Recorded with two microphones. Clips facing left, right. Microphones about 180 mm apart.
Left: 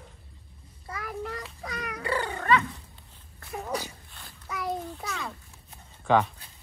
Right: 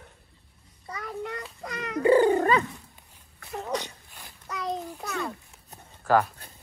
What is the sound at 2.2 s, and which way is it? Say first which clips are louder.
Cat: right 6 dB; 40° right (ahead or behind).